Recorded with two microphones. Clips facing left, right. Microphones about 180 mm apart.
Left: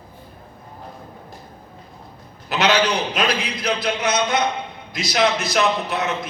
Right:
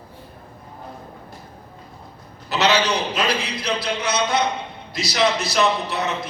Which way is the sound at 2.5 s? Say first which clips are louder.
Left 1 dB; 50° left (ahead or behind).